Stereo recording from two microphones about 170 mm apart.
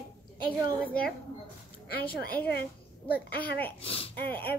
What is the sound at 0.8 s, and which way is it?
Speech, 5° left (ahead or behind).